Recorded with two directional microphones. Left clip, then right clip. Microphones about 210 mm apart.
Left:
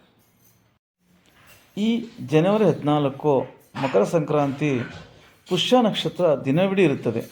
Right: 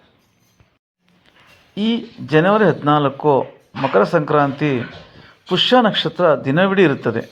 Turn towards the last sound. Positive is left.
turn(degrees=-5)  # may be behind; listen again after turning